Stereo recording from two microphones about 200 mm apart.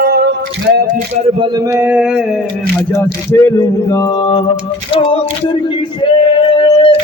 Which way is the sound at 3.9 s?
25° left (ahead or behind).